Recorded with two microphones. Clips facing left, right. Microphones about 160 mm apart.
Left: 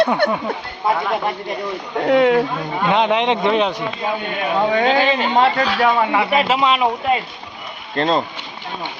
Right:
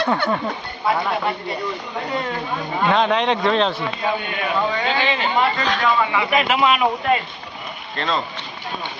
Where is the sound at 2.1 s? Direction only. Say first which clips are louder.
Left 14 dB; 80° left.